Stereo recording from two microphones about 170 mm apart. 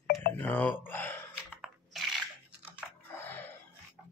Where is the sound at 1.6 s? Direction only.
Centre (ahead or behind).